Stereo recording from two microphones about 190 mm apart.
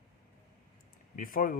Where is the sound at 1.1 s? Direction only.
45° left (ahead or behind).